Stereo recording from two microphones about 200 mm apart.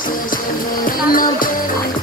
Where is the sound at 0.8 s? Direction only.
45° left (ahead or behind).